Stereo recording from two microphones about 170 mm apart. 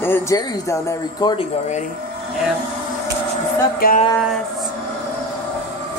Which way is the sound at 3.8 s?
55° left (ahead or behind).